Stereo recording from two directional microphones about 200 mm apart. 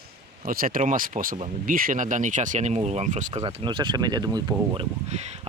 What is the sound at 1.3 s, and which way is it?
Speech, 30° right (ahead or behind).